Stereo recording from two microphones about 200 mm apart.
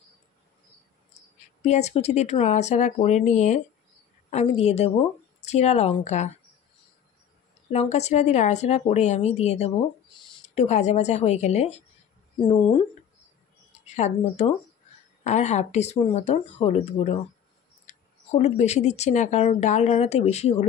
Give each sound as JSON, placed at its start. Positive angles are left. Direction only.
{"t": 1.6, "sound": "speech", "side_deg": 35}
{"t": 7.7, "sound": "speech", "side_deg": 30}
{"t": 13.8, "sound": "speech", "side_deg": 35}